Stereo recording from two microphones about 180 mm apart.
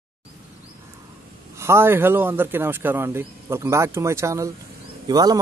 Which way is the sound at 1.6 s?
15° right (ahead or behind).